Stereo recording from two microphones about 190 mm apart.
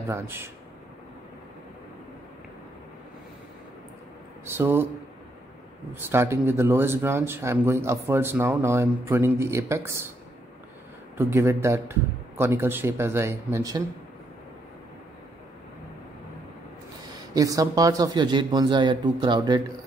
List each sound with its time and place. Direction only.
0.1 s speech: 15° right (ahead or behind)
4.5 s speech: 10° right (ahead or behind)
5.9 s speech: 10° right (ahead or behind)
11.1 s speech: 10° right (ahead or behind)
17.3 s speech: 20° right (ahead or behind)